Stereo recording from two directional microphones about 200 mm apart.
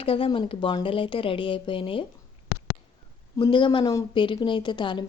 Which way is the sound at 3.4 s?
25° left (ahead or behind).